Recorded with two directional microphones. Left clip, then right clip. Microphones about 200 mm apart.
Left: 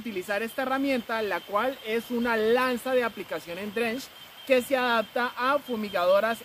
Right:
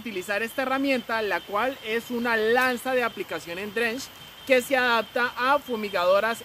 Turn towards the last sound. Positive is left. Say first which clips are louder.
# right 1 dB
turn(degrees=-20)  # may be behind; listen again after turning